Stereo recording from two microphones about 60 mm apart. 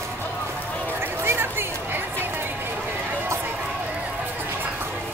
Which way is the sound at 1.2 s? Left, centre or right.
Right.